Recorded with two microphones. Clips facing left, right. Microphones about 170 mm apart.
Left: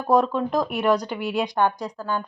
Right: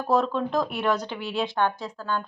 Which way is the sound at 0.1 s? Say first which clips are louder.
Left 3 dB; 10° left (ahead or behind).